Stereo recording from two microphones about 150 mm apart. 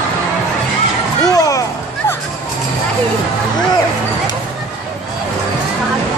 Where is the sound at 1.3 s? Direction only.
25° left (ahead or behind).